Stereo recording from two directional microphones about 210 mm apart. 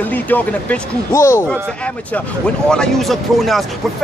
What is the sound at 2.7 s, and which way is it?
Speech, centre (ahead or behind).